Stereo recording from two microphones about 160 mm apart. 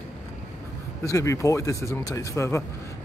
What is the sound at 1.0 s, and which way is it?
A man's voice, 20° left (ahead or behind).